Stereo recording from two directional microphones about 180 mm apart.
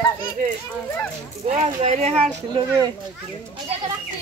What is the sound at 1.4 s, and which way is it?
Speech, 35° right (ahead or behind).